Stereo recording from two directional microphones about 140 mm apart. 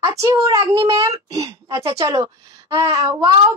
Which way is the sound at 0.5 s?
30° right (ahead or behind).